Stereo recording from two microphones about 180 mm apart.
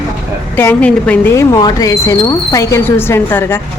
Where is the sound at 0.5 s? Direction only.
10° left (ahead or behind).